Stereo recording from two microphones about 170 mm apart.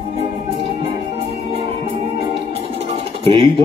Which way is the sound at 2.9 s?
35° right (ahead or behind).